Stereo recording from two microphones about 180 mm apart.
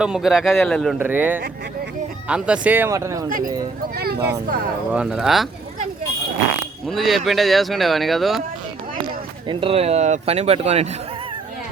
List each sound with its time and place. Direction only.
0.0 s speech: 5° right (ahead or behind)
0.9 s speech: 10° right (ahead or behind)
3.2 s speech: 50° right (ahead or behind)
3.9 s speech: 60° right (ahead or behind)
4.9 s speech: 5° right (ahead or behind)
6.8 s speech: centre (ahead or behind)
9.5 s speech: 30° right (ahead or behind)